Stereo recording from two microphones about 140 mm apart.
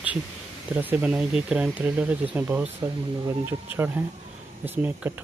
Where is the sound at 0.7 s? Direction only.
10° right (ahead or behind).